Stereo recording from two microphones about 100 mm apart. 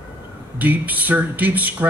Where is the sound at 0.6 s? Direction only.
15° right (ahead or behind).